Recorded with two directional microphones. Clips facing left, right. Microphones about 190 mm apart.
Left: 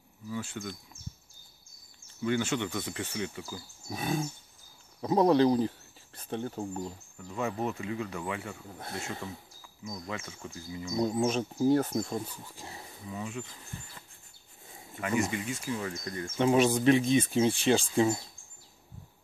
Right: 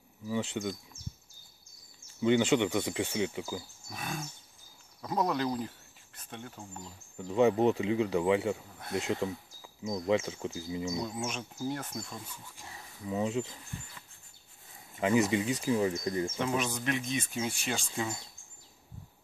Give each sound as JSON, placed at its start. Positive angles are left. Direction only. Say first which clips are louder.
{"t": 0.3, "sound": "speech", "louder": "right 4 dB", "side_deg": -20}
{"t": 2.2, "sound": "speech", "louder": "right 4 dB", "side_deg": -20}
{"t": 3.9, "sound": "speech", "louder": "left 8 dB", "side_deg": 30}
{"t": 7.2, "sound": "speech", "louder": "right 8 dB", "side_deg": -20}
{"t": 8.7, "sound": "speech", "louder": "right 5 dB", "side_deg": 30}
{"t": 9.8, "sound": "speech", "louder": "right 10 dB", "side_deg": -25}
{"t": 11.0, "sound": "speech", "louder": "left 8 dB", "side_deg": 35}
{"t": 13.1, "sound": "speech", "louder": "right 7 dB", "side_deg": -25}
{"t": 15.0, "sound": "speech", "louder": "right 4 dB", "side_deg": -20}
{"t": 16.3, "sound": "speech", "louder": "left 8 dB", "side_deg": 30}